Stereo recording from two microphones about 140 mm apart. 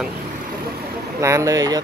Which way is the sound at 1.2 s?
20° right (ahead or behind).